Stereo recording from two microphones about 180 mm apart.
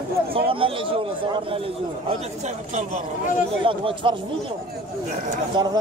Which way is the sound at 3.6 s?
30° right (ahead or behind).